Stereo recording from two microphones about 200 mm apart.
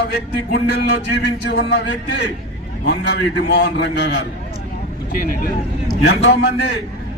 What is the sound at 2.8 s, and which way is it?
Speech, 55° left (ahead or behind).